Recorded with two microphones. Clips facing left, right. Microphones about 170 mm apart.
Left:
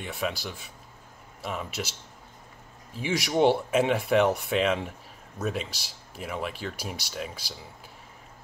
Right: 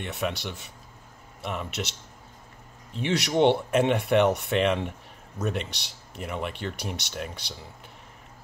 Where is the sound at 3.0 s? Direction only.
70° right (ahead or behind).